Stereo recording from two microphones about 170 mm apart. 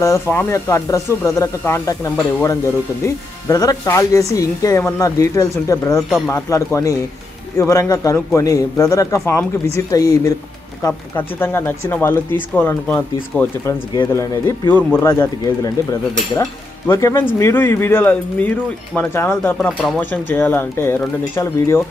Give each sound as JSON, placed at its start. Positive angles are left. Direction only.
{"t": 0.0, "sound": "speech", "side_deg": 15}
{"t": 6.0, "sound": "speech", "side_deg": 0}
{"t": 6.3, "sound": "speech", "side_deg": 20}